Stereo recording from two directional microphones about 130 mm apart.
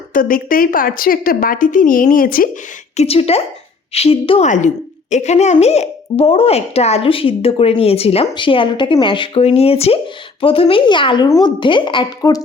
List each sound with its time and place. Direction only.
0.1 s a woman's voice: 90° left
2.9 s speech: 55° left (ahead or behind)
4.4 s speech: 70° left (ahead or behind)
5.1 s speech: 60° left (ahead or behind); by 12.4 s 35° left (ahead or behind)